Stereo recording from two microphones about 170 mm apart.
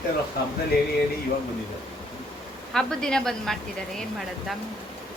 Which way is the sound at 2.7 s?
5° left (ahead or behind).